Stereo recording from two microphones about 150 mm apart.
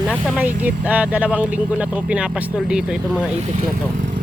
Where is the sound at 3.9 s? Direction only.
60° right (ahead or behind).